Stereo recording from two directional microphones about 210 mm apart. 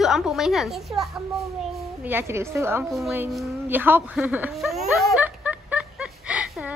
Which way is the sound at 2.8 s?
Centre (ahead or behind).